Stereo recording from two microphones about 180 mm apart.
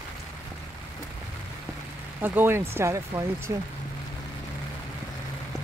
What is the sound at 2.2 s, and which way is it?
Speech, 10° right (ahead or behind).